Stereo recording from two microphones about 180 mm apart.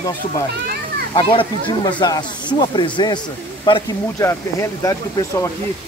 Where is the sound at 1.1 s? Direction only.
25° left (ahead or behind).